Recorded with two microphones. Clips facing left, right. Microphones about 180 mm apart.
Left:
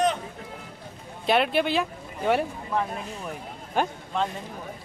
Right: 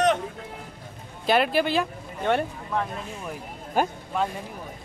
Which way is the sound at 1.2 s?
Centre (ahead or behind).